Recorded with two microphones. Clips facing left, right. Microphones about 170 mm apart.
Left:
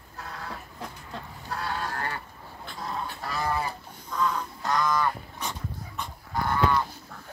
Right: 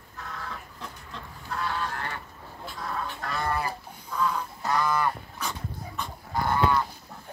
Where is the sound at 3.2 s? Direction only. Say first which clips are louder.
Left 1 dB; centre (ahead or behind).